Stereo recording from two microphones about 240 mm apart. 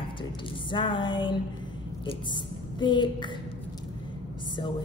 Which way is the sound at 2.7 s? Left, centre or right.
Centre.